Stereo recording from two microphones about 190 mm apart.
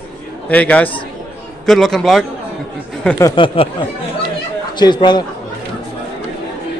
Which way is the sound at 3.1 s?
20° left (ahead or behind).